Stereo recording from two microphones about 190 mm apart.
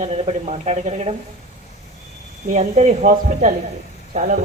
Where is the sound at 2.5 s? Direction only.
35° right (ahead or behind).